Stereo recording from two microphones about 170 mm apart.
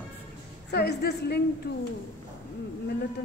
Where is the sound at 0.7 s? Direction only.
80° left.